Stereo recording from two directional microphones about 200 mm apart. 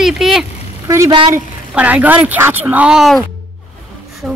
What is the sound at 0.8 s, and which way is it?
A man's voice, 15° right (ahead or behind).